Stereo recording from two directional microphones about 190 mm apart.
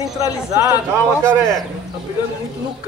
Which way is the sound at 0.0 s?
15° right (ahead or behind).